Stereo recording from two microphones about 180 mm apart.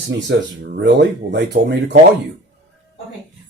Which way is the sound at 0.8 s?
70° right (ahead or behind).